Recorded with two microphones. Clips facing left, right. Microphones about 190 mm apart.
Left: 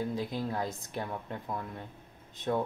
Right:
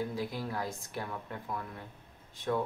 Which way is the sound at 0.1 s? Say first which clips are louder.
Left 3 dB; 20° left (ahead or behind).